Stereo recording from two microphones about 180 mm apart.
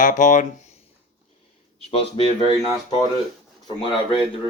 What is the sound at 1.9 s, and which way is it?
Speech, 30° left (ahead or behind).